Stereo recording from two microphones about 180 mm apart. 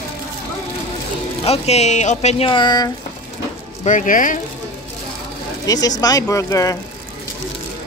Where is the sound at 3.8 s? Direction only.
45° left (ahead or behind).